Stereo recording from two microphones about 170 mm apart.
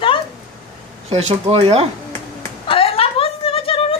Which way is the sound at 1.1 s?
40° right (ahead or behind).